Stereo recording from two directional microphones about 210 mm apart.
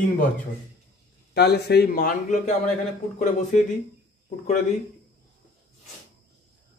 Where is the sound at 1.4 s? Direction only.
50° left (ahead or behind).